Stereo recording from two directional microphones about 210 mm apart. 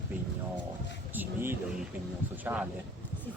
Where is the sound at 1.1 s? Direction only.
10° right (ahead or behind).